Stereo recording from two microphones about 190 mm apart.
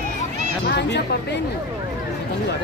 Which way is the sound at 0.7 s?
65° left (ahead or behind).